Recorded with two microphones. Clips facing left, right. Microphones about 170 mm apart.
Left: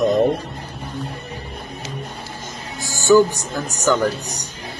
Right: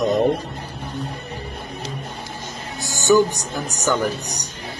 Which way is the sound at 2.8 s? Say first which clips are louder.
Left 2 dB; 20° right (ahead or behind).